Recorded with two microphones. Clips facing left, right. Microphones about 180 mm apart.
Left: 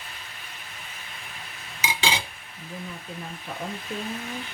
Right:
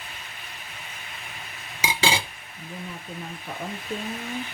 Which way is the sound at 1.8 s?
30° right (ahead or behind).